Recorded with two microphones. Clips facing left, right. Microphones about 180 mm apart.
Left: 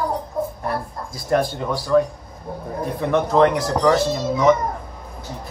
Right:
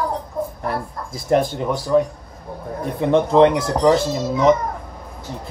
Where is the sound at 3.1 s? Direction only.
25° right (ahead or behind).